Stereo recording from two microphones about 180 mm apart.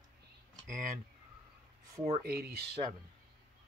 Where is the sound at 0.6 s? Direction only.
45° right (ahead or behind).